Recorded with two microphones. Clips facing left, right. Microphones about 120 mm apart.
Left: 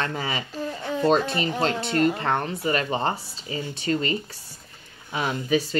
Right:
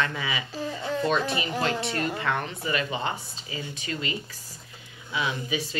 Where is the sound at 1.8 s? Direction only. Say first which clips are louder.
Left 6 dB; 30° left (ahead or behind).